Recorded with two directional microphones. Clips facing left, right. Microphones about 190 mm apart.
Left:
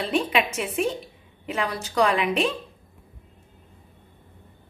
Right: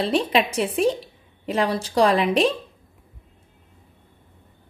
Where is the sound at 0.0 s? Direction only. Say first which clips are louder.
Right 3 dB; 35° right (ahead or behind).